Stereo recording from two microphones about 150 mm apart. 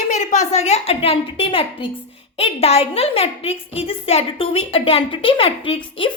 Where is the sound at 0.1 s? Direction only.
55° left (ahead or behind).